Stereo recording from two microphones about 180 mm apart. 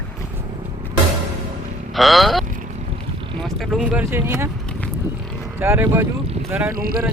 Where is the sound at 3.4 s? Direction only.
Centre (ahead or behind).